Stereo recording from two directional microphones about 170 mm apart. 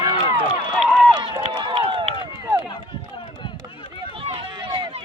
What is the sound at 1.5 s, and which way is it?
Run, 30° right (ahead or behind).